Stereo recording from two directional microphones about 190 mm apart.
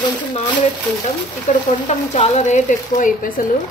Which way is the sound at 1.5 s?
40° left (ahead or behind).